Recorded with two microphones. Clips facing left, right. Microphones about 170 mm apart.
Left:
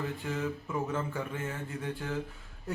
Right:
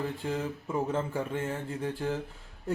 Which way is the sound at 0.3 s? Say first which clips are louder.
Right 2 dB; 30° right (ahead or behind).